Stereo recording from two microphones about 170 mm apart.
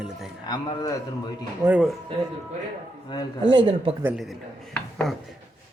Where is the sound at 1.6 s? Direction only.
5° right (ahead or behind).